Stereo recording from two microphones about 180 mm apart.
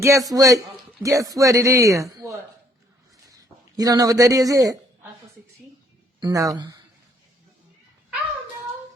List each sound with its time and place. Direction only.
0.0 s speech: 15° right (ahead or behind)
6.1 s speech: 20° right (ahead or behind)